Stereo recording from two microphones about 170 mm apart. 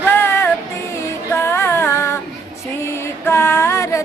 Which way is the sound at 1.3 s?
15° left (ahead or behind).